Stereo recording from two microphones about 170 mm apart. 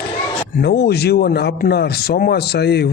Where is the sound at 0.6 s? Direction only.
70° left (ahead or behind).